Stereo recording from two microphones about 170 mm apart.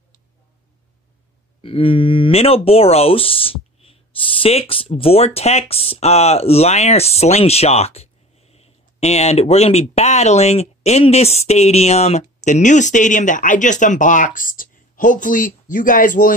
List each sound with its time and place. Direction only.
1.6 s speech: 30° left (ahead or behind); by 16.3 s 50° left (ahead or behind)